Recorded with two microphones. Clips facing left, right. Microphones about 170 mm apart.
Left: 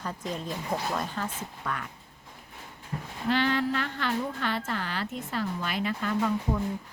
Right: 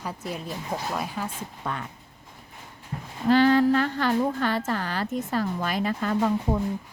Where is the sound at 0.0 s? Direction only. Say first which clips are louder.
Right 1 dB; 10° right (ahead or behind).